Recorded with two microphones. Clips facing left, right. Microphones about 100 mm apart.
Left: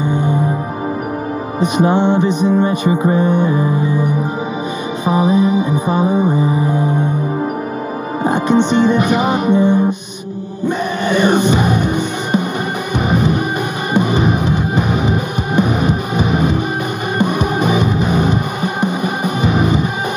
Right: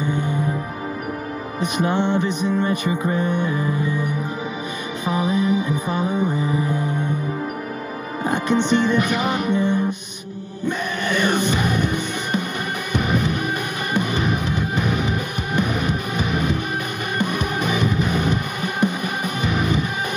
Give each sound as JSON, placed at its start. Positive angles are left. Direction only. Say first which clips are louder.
{"t": 1.6, "sound": "music", "louder": "left 7 dB", "side_deg": 20}
{"t": 8.2, "sound": "music", "louder": "left 6 dB", "side_deg": 20}
{"t": 11.1, "sound": "music", "louder": "left 7 dB", "side_deg": 20}